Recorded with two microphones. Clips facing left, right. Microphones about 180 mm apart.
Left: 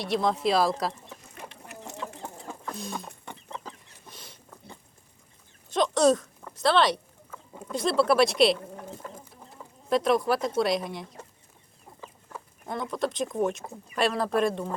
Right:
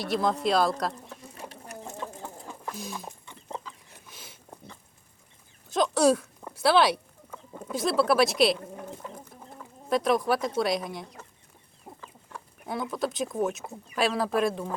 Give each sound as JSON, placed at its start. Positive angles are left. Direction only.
{"t": 0.0, "sound": "speech", "side_deg": 0}
{"t": 1.4, "sound": "chicken", "side_deg": -40}
{"t": 3.3, "sound": "chicken", "side_deg": 65}
{"t": 4.1, "sound": "a sound", "side_deg": -5}
{"t": 5.6, "sound": "speech", "side_deg": 0}
{"t": 9.9, "sound": "speech", "side_deg": 0}
{"t": 11.9, "sound": "chicken", "side_deg": -30}
{"t": 12.3, "sound": "speech", "side_deg": -5}